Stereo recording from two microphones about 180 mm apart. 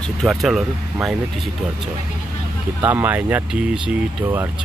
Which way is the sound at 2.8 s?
10° right (ahead or behind).